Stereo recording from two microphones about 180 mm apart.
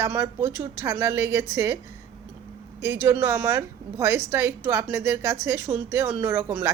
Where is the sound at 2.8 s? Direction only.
15° right (ahead or behind).